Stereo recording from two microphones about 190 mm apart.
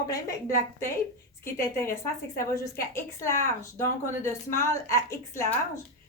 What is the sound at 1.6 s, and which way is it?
A woman's voice, 15° left (ahead or behind).